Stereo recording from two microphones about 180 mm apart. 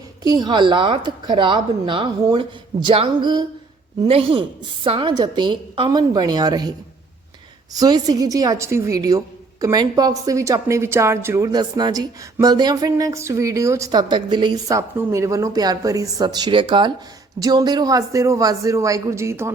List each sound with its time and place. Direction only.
0.2 s a woman's voice: 20° right (ahead or behind)